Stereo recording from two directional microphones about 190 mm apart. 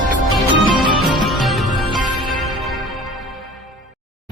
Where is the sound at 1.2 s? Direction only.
Centre (ahead or behind).